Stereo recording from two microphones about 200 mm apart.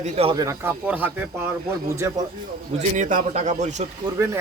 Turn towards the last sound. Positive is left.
turn(degrees=-35)  # may be behind; listen again after turning